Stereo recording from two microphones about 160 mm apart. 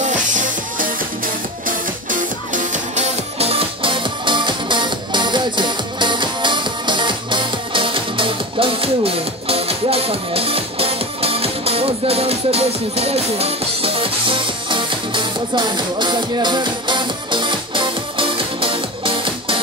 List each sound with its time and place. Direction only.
0.0 s music: 50° right (ahead or behind)
2.0 s music: 55° right (ahead or behind); by 19.6 s 35° right (ahead or behind)